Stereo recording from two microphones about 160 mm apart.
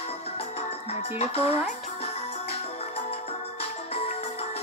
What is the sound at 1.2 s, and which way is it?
Speech, 40° left (ahead or behind).